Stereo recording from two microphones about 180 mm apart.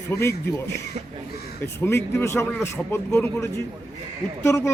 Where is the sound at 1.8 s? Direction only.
15° left (ahead or behind).